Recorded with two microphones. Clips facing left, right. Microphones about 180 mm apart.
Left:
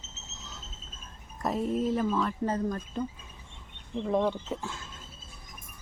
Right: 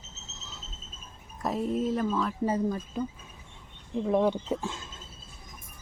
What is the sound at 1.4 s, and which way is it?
Speech, centre (ahead or behind).